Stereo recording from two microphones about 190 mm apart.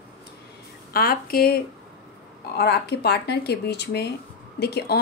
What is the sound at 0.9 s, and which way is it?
A woman's voice, 50° left (ahead or behind).